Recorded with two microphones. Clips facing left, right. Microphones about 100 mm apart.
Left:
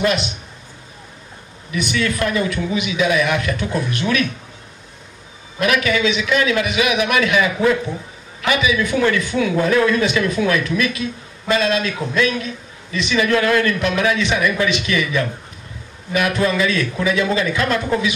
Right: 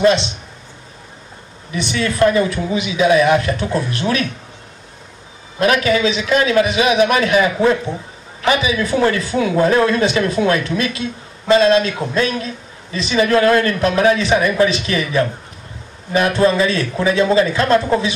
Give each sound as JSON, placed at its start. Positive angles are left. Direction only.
{"t": 0.0, "sound": "speech", "side_deg": -30}
{"t": 1.7, "sound": "a man's voice", "side_deg": -30}
{"t": 5.6, "sound": "a man's voice", "side_deg": -35}